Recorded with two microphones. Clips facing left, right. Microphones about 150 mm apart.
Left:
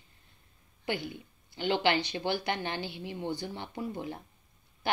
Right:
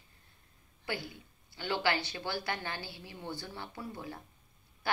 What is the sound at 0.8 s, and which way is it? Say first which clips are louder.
A woman's voice: left 5 dB; 20° left (ahead or behind).